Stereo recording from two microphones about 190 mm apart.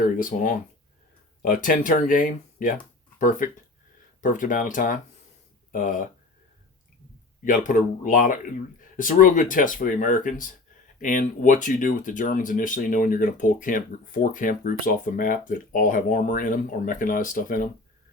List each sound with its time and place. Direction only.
0.0 s speech: 45° left (ahead or behind)
7.4 s speech: 45° left (ahead or behind)